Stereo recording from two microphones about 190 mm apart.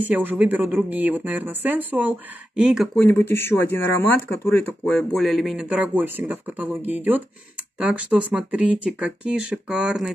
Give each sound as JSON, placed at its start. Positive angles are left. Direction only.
{"t": 0.0, "sound": "speech", "side_deg": -10}
{"t": 3.0, "sound": "speech", "side_deg": 10}